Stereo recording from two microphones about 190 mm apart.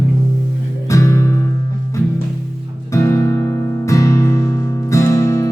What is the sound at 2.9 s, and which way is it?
Music, 15° left (ahead or behind).